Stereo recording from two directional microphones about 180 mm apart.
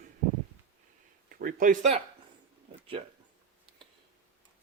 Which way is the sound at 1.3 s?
50° right (ahead or behind).